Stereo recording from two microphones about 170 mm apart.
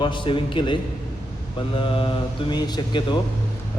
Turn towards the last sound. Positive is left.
turn(degrees=25)  # may be behind; listen again after turning